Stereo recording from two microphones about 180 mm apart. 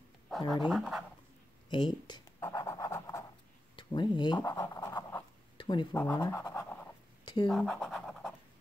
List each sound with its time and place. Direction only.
0.7 s speech: centre (ahead or behind)
1.7 s speech: 25° left (ahead or behind)
2.4 s pant: 15° left (ahead or behind)
3.7 s speech: 25° left (ahead or behind)
4.4 s scratch: 15° left (ahead or behind)
5.9 s speech: 10° left (ahead or behind)
6.3 s scratch: 10° left (ahead or behind)